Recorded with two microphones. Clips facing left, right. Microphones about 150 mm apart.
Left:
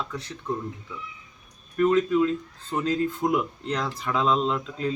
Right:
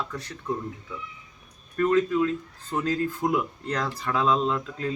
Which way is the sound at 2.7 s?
15° left (ahead or behind).